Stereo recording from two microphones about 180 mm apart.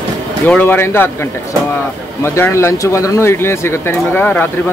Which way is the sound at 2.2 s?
15° left (ahead or behind).